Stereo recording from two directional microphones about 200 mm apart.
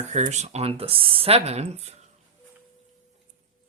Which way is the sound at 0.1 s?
35° right (ahead or behind).